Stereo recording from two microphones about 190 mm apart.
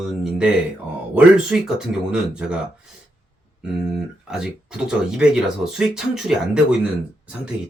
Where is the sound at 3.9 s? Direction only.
5° right (ahead or behind).